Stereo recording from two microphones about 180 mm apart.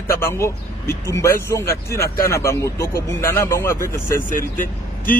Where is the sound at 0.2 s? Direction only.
15° left (ahead or behind).